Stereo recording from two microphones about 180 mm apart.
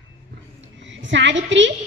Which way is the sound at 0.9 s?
90° right.